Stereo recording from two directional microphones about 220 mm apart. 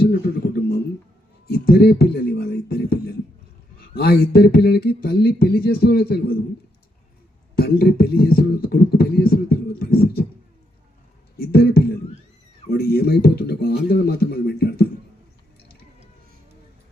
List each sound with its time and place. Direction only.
0.0 s a sound: 45° left (ahead or behind)
1.5 s speech: 45° left (ahead or behind)
3.8 s beatboxing: 45° left (ahead or behind)
7.5 s beatboxing: 45° left (ahead or behind)
11.3 s speech: 45° left (ahead or behind)
12.7 s beatboxing: 45° left (ahead or behind)